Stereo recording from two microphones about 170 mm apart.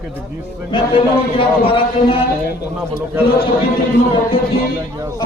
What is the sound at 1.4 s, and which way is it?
Speech, 30° left (ahead or behind).